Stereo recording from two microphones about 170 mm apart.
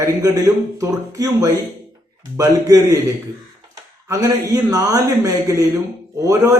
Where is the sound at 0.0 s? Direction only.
15° right (ahead or behind).